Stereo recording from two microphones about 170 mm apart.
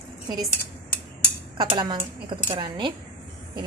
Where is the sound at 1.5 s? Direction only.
25° right (ahead or behind).